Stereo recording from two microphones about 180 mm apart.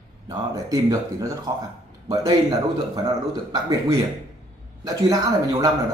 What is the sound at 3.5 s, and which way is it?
Speech, 20° right (ahead or behind).